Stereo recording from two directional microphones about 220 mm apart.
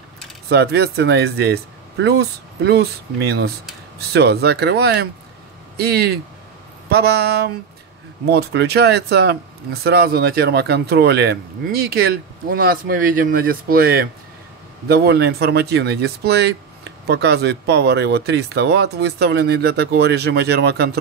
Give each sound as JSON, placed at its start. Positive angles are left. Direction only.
{"t": 0.5, "sound": "speech", "side_deg": -45}